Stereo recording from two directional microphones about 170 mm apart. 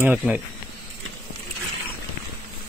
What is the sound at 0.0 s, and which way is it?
Speech, 10° right (ahead or behind).